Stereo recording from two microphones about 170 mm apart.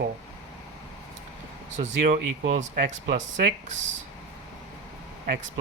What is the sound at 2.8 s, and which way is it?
Speech, 60° right (ahead or behind).